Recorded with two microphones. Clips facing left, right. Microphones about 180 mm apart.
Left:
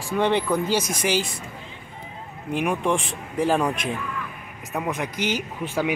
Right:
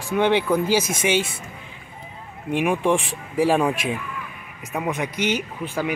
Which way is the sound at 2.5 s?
5° right (ahead or behind).